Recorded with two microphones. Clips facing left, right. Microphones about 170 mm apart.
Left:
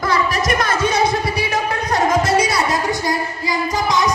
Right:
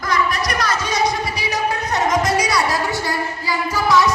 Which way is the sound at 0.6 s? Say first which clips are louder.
Left 3 dB; 55° left (ahead or behind).